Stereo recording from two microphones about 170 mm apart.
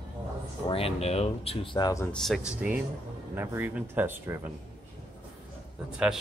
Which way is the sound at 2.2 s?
Centre (ahead or behind).